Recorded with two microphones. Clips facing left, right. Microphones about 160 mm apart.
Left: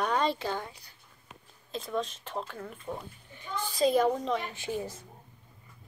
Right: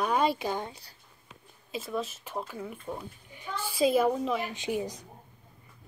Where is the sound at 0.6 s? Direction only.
25° right (ahead or behind).